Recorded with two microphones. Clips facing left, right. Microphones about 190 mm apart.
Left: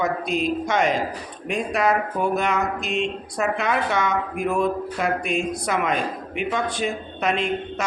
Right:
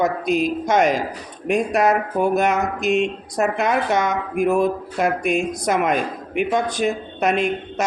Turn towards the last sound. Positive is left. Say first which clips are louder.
# right 4 dB
turn(degrees=-45)  # may be behind; listen again after turning